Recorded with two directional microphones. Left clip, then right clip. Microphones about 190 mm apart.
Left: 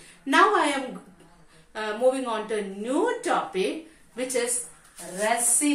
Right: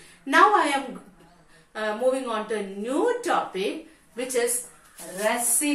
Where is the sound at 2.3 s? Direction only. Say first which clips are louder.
Even; 20° left (ahead or behind).